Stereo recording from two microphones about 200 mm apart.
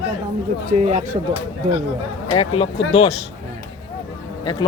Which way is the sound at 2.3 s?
25° left (ahead or behind).